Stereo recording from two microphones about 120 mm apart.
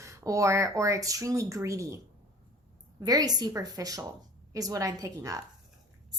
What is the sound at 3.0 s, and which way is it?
A woman's voice, 30° right (ahead or behind).